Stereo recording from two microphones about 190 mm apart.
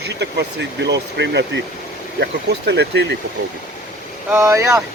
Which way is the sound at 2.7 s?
65° right (ahead or behind).